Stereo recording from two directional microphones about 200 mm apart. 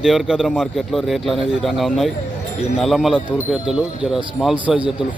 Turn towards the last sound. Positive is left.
turn(degrees=-5)  # may be behind; listen again after turning